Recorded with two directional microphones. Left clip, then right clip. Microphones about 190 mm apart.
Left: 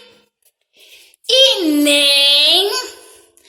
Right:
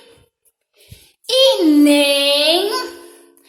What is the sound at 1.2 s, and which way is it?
Speech, 20° right (ahead or behind).